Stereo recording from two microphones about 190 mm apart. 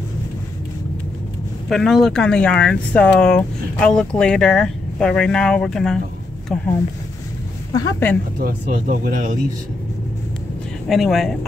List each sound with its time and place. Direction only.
1.7 s speech: centre (ahead or behind)
7.7 s speech: 15° left (ahead or behind)
8.4 s speech: 50° right (ahead or behind)
10.9 s speech: centre (ahead or behind)